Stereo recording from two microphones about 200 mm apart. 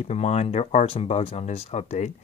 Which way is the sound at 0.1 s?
35° left (ahead or behind).